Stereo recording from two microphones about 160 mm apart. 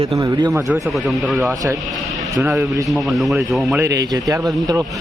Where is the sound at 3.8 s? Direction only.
20° right (ahead or behind).